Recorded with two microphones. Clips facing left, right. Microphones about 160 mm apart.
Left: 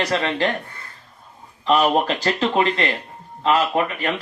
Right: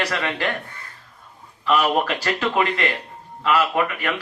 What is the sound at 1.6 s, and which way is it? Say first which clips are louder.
Speech: left 2 dB; 30° left (ahead or behind).